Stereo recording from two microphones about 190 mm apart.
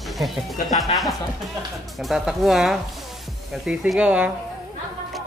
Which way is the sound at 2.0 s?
Centre (ahead or behind).